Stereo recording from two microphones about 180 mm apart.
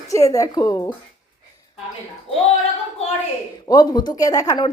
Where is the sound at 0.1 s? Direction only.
20° left (ahead or behind).